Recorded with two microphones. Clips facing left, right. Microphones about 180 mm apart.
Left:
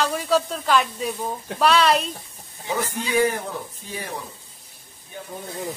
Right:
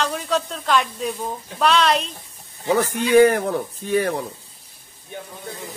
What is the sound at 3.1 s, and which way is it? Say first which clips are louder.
Speech: right 8 dB; 65° right (ahead or behind).